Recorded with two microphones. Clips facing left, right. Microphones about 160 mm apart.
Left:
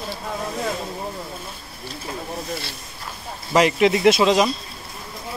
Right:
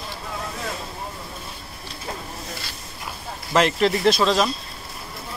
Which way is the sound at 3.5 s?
10° left (ahead or behind).